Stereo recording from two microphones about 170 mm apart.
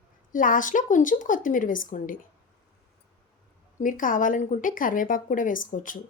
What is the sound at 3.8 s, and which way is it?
Speech, 50° left (ahead or behind).